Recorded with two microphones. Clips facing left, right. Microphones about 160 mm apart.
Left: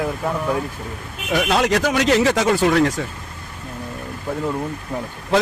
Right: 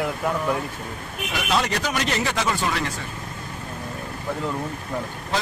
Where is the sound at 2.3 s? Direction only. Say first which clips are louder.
Left 8 dB; 65° left (ahead or behind).